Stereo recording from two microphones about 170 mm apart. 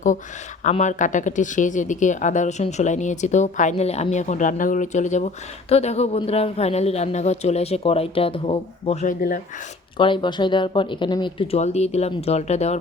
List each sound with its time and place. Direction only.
0.6 s speech: 45° left (ahead or behind)
9.0 s speech: 55° left (ahead or behind)
10.0 s speech: 25° left (ahead or behind)